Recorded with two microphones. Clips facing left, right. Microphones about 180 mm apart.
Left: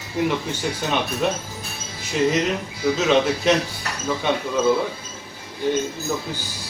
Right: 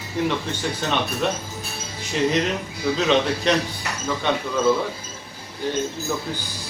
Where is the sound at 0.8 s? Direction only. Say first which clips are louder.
Left 1 dB; 10° left (ahead or behind).